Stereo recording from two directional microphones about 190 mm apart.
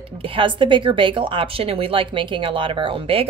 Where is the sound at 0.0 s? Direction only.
30° right (ahead or behind).